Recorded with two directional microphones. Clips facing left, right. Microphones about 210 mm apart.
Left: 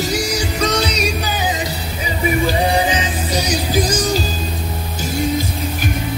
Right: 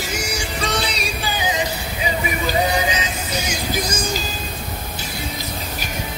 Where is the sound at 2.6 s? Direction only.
30° left (ahead or behind).